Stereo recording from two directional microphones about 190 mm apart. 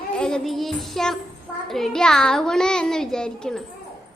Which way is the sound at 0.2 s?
5° left (ahead or behind).